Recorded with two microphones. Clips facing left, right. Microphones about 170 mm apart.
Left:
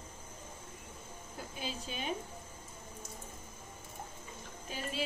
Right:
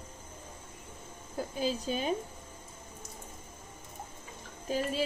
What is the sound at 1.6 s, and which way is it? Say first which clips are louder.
Speech: right 9 dB; 40° right (ahead or behind).